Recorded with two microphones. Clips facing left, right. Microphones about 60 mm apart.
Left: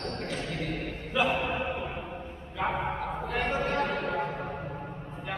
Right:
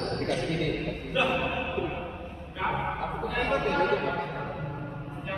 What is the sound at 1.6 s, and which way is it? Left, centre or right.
Music, centre.